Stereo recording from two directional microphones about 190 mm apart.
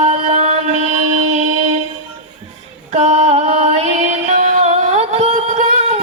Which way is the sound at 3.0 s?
35° right (ahead or behind).